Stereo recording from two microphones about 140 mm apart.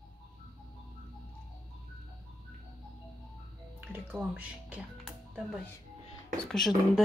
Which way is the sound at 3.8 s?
10° right (ahead or behind).